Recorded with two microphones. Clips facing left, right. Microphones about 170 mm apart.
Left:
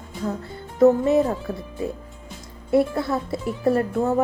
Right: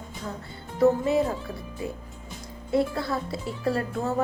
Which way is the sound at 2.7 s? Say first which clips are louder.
Left 5 dB; 25° left (ahead or behind).